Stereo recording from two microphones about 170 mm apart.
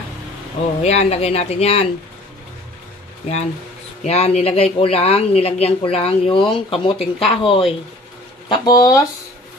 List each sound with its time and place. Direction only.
0.8 s speech: 40° left (ahead or behind)
4.0 s speech: 40° left (ahead or behind); by 9.0 s 20° left (ahead or behind)